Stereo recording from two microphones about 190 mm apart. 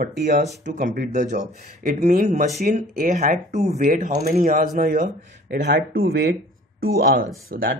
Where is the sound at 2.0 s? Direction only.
35° right (ahead or behind).